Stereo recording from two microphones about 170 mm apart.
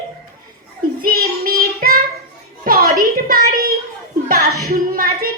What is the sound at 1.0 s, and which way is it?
Child singing, 60° right (ahead or behind).